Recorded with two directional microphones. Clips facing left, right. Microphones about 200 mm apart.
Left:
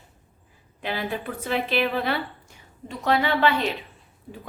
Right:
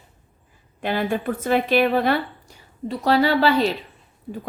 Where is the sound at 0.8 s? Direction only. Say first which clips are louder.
Right 6 dB; 50° right (ahead or behind).